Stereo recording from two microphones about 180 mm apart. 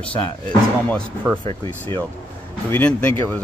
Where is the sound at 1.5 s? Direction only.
20° left (ahead or behind).